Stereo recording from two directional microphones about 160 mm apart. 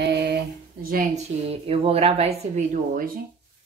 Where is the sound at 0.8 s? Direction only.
55° right (ahead or behind).